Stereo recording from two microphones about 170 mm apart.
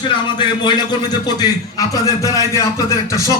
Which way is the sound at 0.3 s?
25° left (ahead or behind).